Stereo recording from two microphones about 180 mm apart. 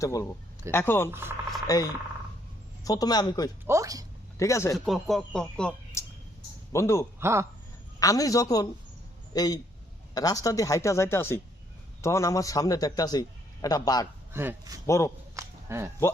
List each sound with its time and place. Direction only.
0.0 s speech: 15° left (ahead or behind)
1.1 s speech: 15° right (ahead or behind)
1.6 s a man's voice: 20° left (ahead or behind)
3.7 s speech: 20° right (ahead or behind)
4.4 s speech: 15° left (ahead or behind)
4.7 s speech: centre (ahead or behind)
7.2 s speech: 15° right (ahead or behind)
7.9 s a man's voice: 20° left (ahead or behind)
14.3 s speech: 15° right (ahead or behind)
14.8 s speech: 15° left (ahead or behind)
15.4 s a sound: 15° right (ahead or behind)